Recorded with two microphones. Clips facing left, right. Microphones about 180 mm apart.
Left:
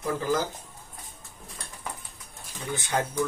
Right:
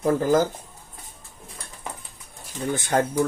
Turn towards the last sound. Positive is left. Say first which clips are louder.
# right 6 dB
turn(degrees=-50)  # may be behind; listen again after turning